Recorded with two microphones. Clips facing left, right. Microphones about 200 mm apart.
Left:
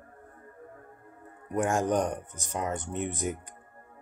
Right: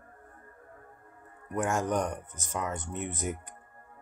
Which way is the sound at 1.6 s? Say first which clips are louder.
Left 3 dB; 30° left (ahead or behind).